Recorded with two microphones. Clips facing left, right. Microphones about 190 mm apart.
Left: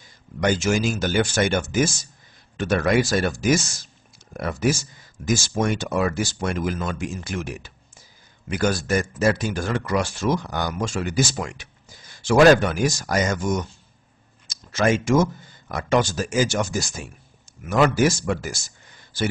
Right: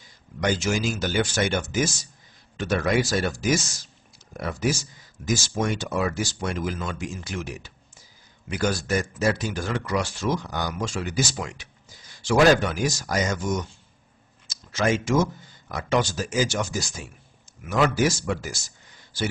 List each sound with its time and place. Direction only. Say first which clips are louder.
0.4 s speech: left 3 dB; 50° left (ahead or behind)